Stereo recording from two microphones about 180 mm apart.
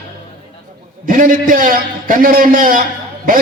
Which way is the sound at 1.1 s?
50° right (ahead or behind).